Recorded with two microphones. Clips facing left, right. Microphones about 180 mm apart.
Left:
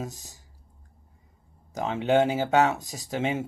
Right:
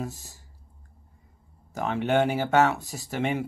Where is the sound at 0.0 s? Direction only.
15° left (ahead or behind).